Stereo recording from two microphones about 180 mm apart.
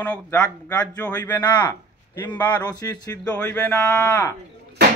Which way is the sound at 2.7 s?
20° left (ahead or behind).